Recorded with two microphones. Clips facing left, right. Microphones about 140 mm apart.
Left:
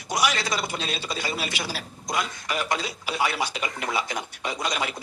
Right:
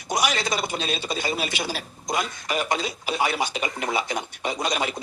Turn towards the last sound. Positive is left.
turn(degrees=-25)  # may be behind; listen again after turning